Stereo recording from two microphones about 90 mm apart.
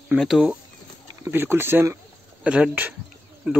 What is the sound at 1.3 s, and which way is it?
Speech, 25° right (ahead or behind).